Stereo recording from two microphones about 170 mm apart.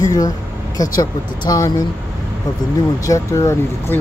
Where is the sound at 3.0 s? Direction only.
20° left (ahead or behind).